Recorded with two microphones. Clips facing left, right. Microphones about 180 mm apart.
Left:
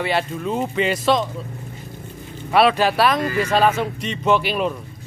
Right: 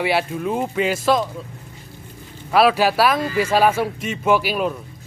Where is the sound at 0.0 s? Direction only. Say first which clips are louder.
Right 1 dB; 10° right (ahead or behind).